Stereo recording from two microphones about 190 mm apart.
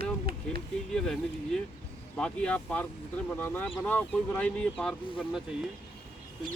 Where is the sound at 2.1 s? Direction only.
5° left (ahead or behind).